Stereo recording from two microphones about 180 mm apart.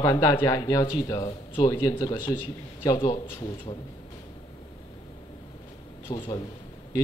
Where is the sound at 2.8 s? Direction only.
30° left (ahead or behind).